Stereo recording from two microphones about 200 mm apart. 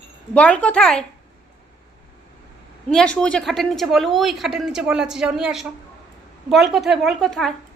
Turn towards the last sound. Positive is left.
turn(degrees=0)  # may be behind; listen again after turning